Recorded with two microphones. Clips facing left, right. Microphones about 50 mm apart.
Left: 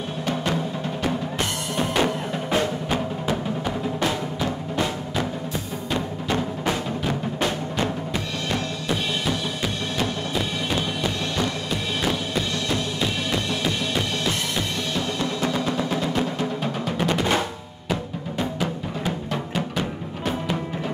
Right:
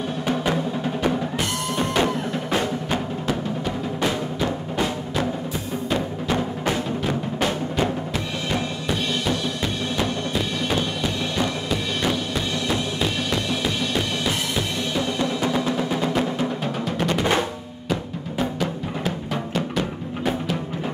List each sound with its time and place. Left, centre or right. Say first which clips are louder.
2.0 s music: right 1 dB; centre
5.9 s music: right 2 dB; centre
8.5 s drum: right 1 dB; centre
11.3 s music: right 2 dB; centre
12.6 s drum: right 1 dB; centre
15.1 s music: right 2 dB; centre
18.4 s music: right 2 dB; centre